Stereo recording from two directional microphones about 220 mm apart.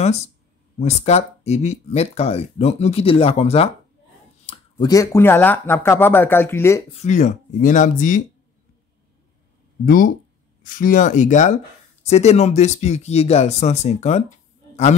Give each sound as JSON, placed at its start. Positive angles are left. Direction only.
{"t": 0.7, "sound": "speech", "side_deg": 30}
{"t": 6.9, "sound": "speech", "side_deg": 30}
{"t": 9.8, "sound": "speech", "side_deg": 40}